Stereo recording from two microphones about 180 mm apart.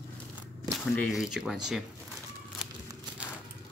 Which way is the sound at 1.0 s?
Centre (ahead or behind).